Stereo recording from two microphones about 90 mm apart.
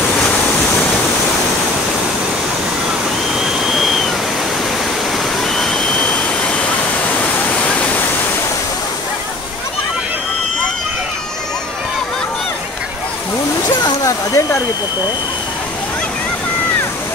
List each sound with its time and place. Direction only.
3.3 s a sound: 5° right (ahead or behind)
5.1 s waterfall: 5° left (ahead or behind)
14.0 s hair dryer: 35° left (ahead or behind)